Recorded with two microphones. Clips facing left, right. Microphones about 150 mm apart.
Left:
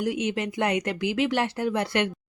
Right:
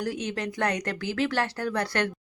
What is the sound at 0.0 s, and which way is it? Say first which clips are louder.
Speech: left 4 dB; 20° left (ahead or behind).